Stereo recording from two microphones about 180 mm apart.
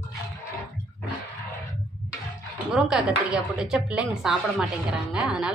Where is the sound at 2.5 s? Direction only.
5° right (ahead or behind).